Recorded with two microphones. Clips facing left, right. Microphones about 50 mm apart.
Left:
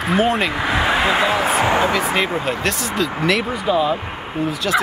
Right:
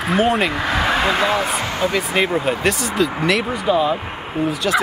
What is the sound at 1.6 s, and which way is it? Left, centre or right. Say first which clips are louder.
Speech: left 5 dB; left.